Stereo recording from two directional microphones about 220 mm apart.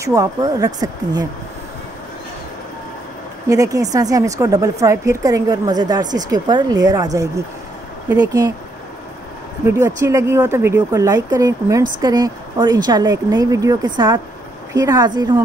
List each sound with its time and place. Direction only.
0.0 s a woman's voice: 15° right (ahead or behind)
3.4 s a woman's voice: 15° right (ahead or behind)
9.7 s a woman's voice: 15° right (ahead or behind)